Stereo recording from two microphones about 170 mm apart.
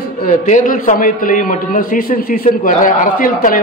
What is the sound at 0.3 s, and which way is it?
A man's voice, 45° left (ahead or behind).